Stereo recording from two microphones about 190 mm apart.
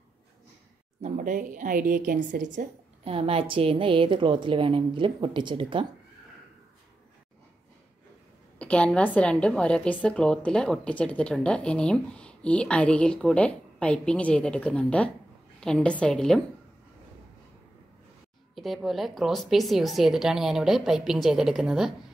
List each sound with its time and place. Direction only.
1.0 s a woman's voice: 45° right (ahead or behind); by 5.9 s 25° right (ahead or behind)
8.5 s a woman's voice: 5° left (ahead or behind)
18.5 s a woman's voice: centre (ahead or behind)